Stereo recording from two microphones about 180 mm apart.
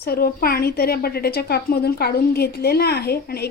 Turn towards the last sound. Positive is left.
turn(degrees=60)  # may be behind; listen again after turning